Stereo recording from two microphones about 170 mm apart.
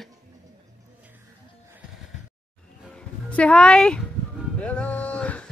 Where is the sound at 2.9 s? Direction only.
5° left (ahead or behind).